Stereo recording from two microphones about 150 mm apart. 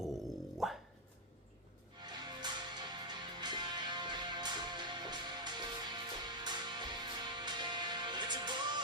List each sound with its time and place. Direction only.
0.0 s dog: centre (ahead or behind)
2.0 s music: 30° right (ahead or behind)